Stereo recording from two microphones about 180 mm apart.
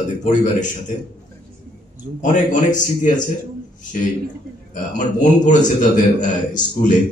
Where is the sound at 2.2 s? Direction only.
45° left (ahead or behind).